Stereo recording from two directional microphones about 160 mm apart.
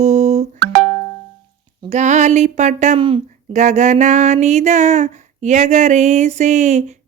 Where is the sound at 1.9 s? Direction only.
45° right (ahead or behind).